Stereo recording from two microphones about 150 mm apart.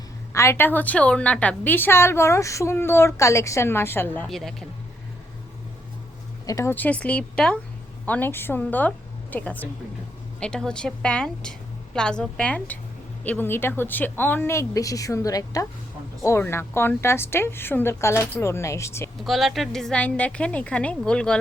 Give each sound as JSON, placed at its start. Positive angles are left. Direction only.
{"t": 0.3, "sound": "a woman's voice", "side_deg": 15}
{"t": 4.3, "sound": "a woman's voice", "side_deg": 0}
{"t": 6.4, "sound": "a woman's voice", "side_deg": 25}
{"t": 19.2, "sound": "a woman's voice", "side_deg": 0}